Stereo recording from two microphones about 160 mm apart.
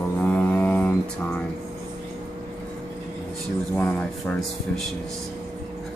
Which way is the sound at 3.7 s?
10° left (ahead or behind).